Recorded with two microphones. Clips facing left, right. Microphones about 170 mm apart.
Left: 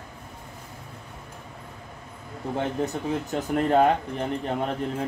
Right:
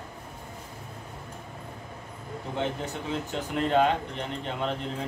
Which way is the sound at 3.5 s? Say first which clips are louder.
Left 3 dB; 50° left (ahead or behind).